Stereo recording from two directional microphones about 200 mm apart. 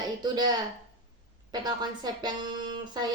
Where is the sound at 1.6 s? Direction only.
20° right (ahead or behind).